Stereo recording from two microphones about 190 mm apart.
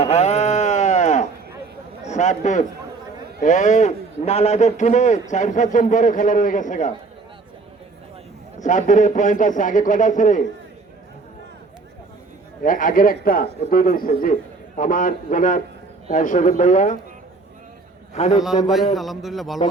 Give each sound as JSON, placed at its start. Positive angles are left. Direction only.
{"t": 0.0, "sound": "sheep", "side_deg": 35}
{"t": 2.0, "sound": "a man's voice", "side_deg": 40}
{"t": 8.5, "sound": "a man's voice", "side_deg": 40}
{"t": 12.6, "sound": "a man's voice", "side_deg": 45}
{"t": 18.1, "sound": "a man's voice", "side_deg": 35}
{"t": 18.9, "sound": "a man's voice", "side_deg": 0}